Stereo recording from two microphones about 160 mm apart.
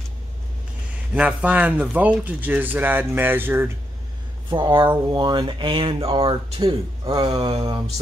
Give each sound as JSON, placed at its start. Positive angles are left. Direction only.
{"t": 1.1, "sound": "speech", "side_deg": -10}
{"t": 4.5, "sound": "speech", "side_deg": -30}